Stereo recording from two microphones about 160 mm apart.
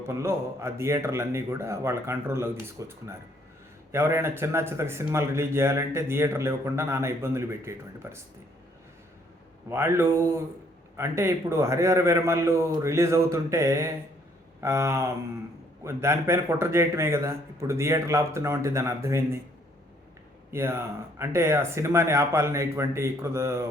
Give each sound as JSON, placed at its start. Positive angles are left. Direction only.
{"t": 0.1, "sound": "speech", "side_deg": -15}
{"t": 9.6, "sound": "speech", "side_deg": -15}
{"t": 20.5, "sound": "speech", "side_deg": -15}